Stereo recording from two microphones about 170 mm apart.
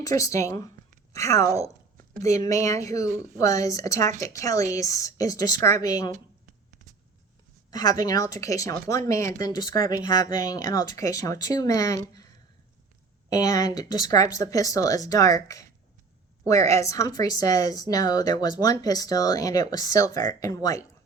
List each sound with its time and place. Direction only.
0.0 s speech: 20° left (ahead or behind)
3.1 s a woman's voice: 50° right (ahead or behind)
3.3 s speech: 20° left (ahead or behind)
7.7 s speech: 20° left (ahead or behind)
13.3 s speech: 20° left (ahead or behind)